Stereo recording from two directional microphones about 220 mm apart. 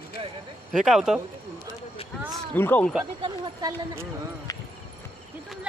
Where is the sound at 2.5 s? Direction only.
10° left (ahead or behind).